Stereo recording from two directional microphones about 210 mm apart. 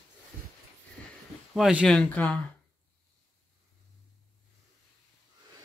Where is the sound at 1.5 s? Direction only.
5° right (ahead or behind).